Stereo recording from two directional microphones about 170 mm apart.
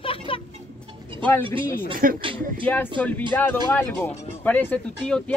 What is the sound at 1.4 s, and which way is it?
Speech, 30° right (ahead or behind).